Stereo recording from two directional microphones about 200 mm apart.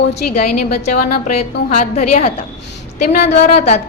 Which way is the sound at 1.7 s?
35° left (ahead or behind).